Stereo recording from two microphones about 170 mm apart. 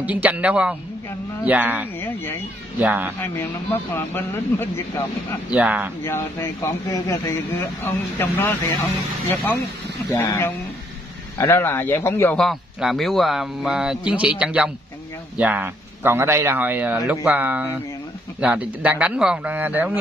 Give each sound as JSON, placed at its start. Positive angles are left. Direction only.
{"t": 0.0, "sound": "speech", "side_deg": -10}
{"t": 2.0, "sound": "speech", "side_deg": 10}
{"t": 2.8, "sound": "speech", "side_deg": -10}
{"t": 3.9, "sound": "speech", "side_deg": 15}
{"t": 5.5, "sound": "speech", "side_deg": -10}
{"t": 6.0, "sound": "speech", "side_deg": 15}
{"t": 12.4, "sound": "speech", "side_deg": 0}